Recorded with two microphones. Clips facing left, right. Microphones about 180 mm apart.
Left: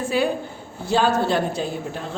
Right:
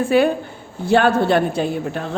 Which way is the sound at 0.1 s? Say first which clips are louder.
Right 6 dB; 60° right (ahead or behind).